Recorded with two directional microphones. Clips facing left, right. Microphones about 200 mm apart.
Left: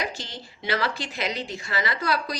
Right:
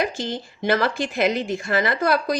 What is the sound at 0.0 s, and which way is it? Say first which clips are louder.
Speech: right 8 dB; 50° right (ahead or behind).